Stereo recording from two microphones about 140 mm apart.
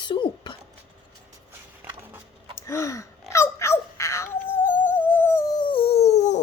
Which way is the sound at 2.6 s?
20° left (ahead or behind).